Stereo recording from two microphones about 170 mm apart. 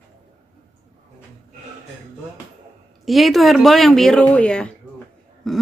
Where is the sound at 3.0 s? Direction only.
Centre (ahead or behind).